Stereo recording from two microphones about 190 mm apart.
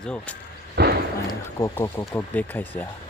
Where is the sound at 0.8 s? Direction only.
60° right (ahead or behind).